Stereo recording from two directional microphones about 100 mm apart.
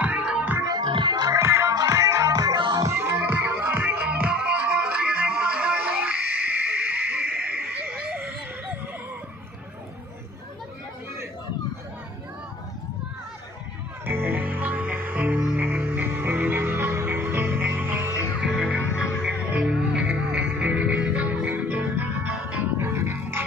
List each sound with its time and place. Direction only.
0.0 s music: 15° right (ahead or behind)
0.6 s music: 40° right (ahead or behind)
0.8 s music: 50° right (ahead or behind)
1.4 s music: 25° right (ahead or behind)
1.7 s music: 35° right (ahead or behind); by 8.3 s 10° right (ahead or behind)
14.0 s music: 20° right (ahead or behind)
18.4 s music: 5° right (ahead or behind); by 23.4 s 25° right (ahead or behind)